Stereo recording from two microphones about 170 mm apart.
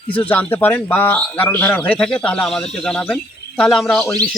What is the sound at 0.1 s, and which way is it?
A man's voice, 10° left (ahead or behind).